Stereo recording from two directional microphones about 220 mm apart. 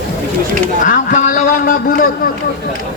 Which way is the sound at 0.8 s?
35° left (ahead or behind).